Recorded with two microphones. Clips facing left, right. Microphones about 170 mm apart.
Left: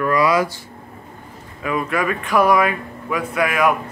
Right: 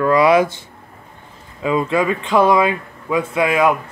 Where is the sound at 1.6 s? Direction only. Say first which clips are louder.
Right 4 dB; 25° right (ahead or behind).